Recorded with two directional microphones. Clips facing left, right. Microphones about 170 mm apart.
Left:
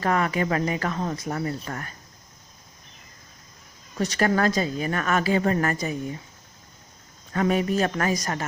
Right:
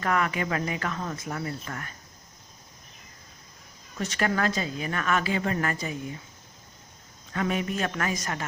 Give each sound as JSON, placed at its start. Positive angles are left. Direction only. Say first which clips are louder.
{"t": 0.0, "sound": "a woman's voice", "louder": "left 3 dB", "side_deg": 35}
{"t": 3.9, "sound": "a woman's voice", "louder": "left 5 dB", "side_deg": 35}
{"t": 7.3, "sound": "a woman's voice", "louder": "left 6 dB", "side_deg": 40}